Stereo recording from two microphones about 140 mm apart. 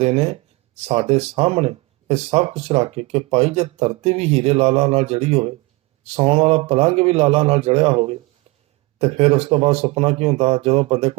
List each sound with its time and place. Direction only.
0.0 s speech: 45° right (ahead or behind)